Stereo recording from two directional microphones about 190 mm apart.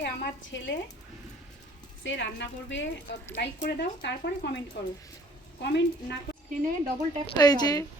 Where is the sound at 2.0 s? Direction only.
70° left (ahead or behind).